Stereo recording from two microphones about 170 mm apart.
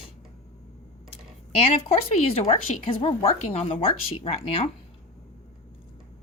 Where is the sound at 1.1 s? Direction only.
35° left (ahead or behind).